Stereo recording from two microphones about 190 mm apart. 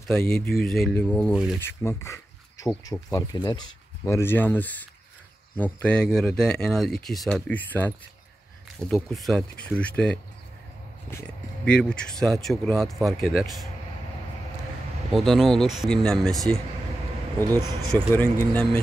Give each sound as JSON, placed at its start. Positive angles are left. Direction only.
{"t": 0.3, "sound": "speech", "side_deg": 5}
{"t": 1.7, "sound": "speech", "side_deg": 10}
{"t": 15.1, "sound": "speech", "side_deg": 0}
{"t": 17.4, "sound": "speech", "side_deg": -15}
{"t": 17.9, "sound": "speech", "side_deg": 5}